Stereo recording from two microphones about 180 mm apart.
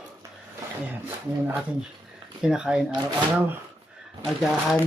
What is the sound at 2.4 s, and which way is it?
Speech, 5° right (ahead or behind).